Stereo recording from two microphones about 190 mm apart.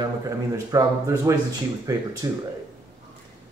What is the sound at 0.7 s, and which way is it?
Speech, 15° right (ahead or behind).